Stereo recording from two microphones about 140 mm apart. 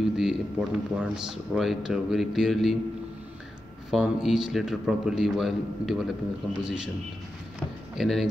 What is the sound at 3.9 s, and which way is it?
A man's voice, 5° right (ahead or behind).